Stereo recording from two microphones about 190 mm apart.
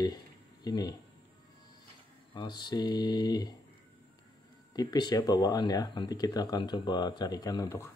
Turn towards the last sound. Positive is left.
turn(degrees=15)  # may be behind; listen again after turning